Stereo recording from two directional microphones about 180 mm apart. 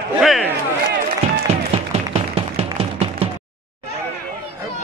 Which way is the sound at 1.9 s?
35° right (ahead or behind).